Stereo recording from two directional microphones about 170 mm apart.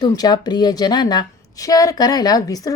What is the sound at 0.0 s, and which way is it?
A woman's voice, 25° left (ahead or behind).